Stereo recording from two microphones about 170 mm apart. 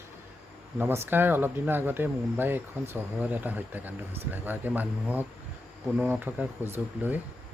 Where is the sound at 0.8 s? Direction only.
10° right (ahead or behind).